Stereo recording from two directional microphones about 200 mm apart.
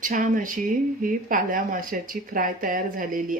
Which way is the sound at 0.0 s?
40° right (ahead or behind).